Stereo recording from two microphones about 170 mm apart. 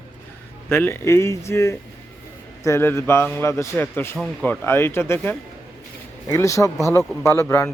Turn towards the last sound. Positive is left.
turn(degrees=15)  # may be behind; listen again after turning